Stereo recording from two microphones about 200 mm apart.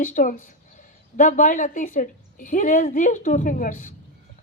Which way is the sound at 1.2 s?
40° left (ahead or behind).